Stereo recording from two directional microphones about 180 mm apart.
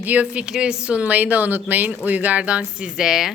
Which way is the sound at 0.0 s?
10° right (ahead or behind).